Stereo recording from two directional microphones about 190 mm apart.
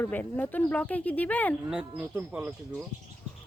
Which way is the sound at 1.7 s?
5° right (ahead or behind).